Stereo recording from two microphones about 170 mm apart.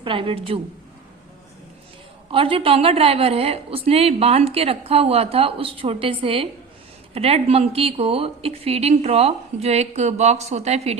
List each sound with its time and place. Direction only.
0.0 s a woman's voice: 30° right (ahead or behind)
2.3 s a woman's voice: 35° right (ahead or behind)